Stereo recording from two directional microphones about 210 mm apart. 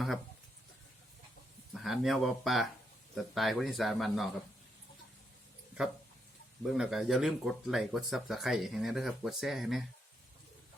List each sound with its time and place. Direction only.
1.7 s speech: centre (ahead or behind)
6.6 s speech: centre (ahead or behind)